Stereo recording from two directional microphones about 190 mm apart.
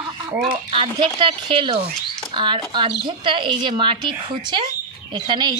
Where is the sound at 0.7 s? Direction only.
25° right (ahead or behind).